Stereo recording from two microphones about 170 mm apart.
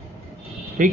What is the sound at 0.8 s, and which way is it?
Speech, 50° right (ahead or behind).